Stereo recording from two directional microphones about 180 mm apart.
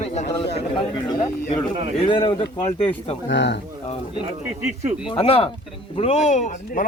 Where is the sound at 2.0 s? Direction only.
30° left (ahead or behind).